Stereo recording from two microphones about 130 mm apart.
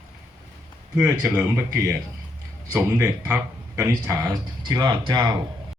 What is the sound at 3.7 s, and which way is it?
Speech, 20° right (ahead or behind).